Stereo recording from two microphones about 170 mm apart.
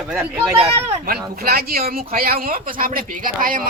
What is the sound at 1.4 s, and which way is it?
Speech, 65° right (ahead or behind).